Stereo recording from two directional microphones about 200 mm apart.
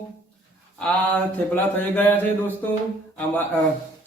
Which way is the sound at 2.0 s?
10° left (ahead or behind).